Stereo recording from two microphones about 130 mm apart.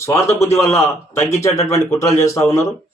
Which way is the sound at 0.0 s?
20° left (ahead or behind).